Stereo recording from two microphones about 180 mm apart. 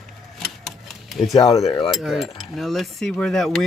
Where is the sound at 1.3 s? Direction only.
20° left (ahead or behind).